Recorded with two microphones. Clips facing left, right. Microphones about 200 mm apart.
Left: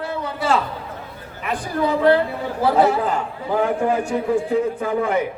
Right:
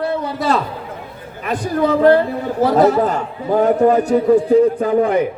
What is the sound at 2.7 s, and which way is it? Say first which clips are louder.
A man's voice: right 5 dB; 40° right (ahead or behind).